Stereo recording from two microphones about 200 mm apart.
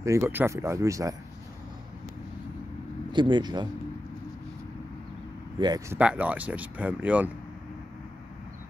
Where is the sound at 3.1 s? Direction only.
20° right (ahead or behind).